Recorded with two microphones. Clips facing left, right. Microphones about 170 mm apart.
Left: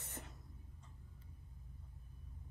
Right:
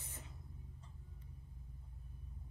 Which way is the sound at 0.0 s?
70° left (ahead or behind).